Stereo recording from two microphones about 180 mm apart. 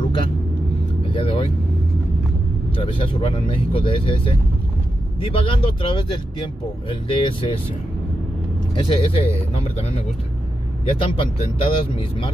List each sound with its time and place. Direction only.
1.1 s vehicle: 30° left (ahead or behind)
2.7 s speech: 30° left (ahead or behind)
8.7 s speech: 30° left (ahead or behind)